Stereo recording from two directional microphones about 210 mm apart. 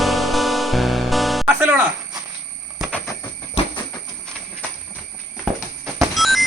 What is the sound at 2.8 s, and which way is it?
Train, 5° left (ahead or behind).